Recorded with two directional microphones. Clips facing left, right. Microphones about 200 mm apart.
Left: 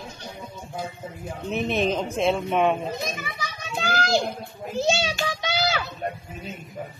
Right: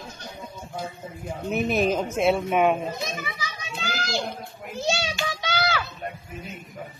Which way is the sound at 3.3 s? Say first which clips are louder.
Left 3 dB; 50° left (ahead or behind).